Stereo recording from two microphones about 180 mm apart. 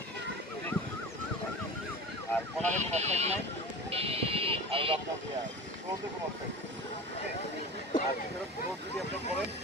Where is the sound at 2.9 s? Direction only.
40° right (ahead or behind).